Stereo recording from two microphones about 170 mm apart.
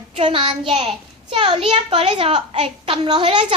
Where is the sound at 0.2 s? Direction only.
30° right (ahead or behind).